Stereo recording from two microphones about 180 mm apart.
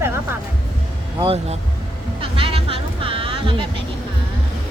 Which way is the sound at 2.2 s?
30° right (ahead or behind).